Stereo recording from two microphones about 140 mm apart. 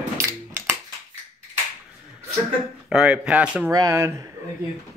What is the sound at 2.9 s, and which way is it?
Speech, 5° right (ahead or behind).